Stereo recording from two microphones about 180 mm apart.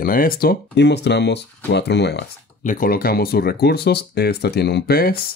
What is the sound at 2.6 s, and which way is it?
Speech, 50° left (ahead or behind).